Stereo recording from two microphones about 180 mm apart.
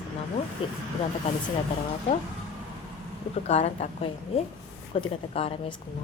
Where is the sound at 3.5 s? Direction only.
35° left (ahead or behind).